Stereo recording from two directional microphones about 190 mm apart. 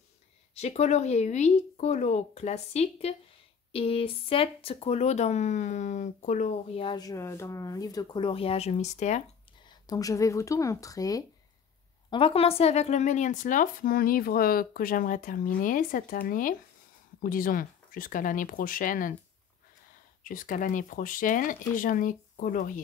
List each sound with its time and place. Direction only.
0.6 s speech: 35° left (ahead or behind)
6.8 s speech: 20° left (ahead or behind)
9.7 s speech: 20° left (ahead or behind)
12.1 s speech: 30° left (ahead or behind); by 19.1 s 45° left (ahead or behind)
20.2 s speech: 45° left (ahead or behind)